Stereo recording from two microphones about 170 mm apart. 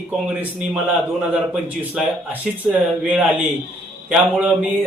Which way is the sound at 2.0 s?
Centre (ahead or behind).